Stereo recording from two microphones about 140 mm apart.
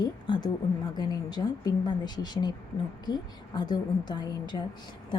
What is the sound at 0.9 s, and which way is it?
A woman's voice, 30° left (ahead or behind).